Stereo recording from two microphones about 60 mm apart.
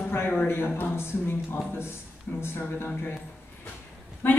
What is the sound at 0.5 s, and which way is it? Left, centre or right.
A woman's voice, left.